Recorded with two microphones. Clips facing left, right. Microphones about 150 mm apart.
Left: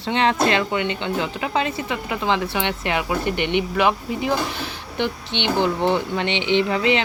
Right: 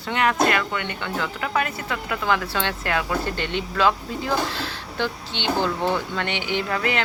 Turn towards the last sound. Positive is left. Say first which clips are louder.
# left 6 dB
turn(degrees=20)  # may be behind; listen again after turning